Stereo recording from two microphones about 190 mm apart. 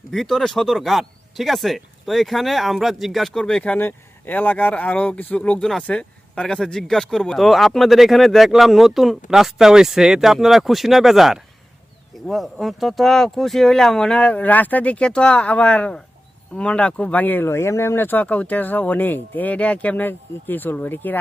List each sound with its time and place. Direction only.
0.1 s speech: centre (ahead or behind)